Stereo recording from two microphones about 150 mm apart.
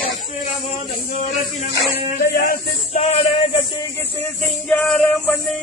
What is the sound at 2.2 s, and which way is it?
Speech, 85° left.